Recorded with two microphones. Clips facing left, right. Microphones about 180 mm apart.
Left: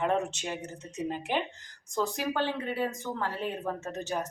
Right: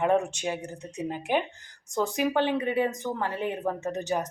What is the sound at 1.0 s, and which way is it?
Speech, 50° right (ahead or behind).